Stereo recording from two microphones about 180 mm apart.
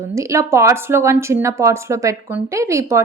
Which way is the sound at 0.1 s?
15° right (ahead or behind).